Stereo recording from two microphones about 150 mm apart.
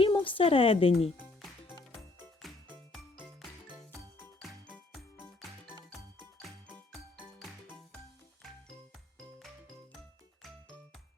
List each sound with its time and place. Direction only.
0.0 s a woman's voice: 35° left (ahead or behind)
1.1 s music: 5° right (ahead or behind)
6.7 s music: 10° left (ahead or behind)
8.4 s music: centre (ahead or behind)